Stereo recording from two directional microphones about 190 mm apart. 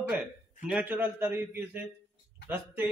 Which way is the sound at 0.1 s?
5° right (ahead or behind).